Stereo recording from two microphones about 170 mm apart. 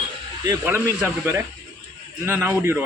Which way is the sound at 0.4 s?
15° right (ahead or behind).